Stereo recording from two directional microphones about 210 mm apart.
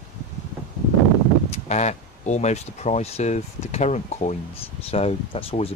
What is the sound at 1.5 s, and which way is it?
Speech, 30° left (ahead or behind).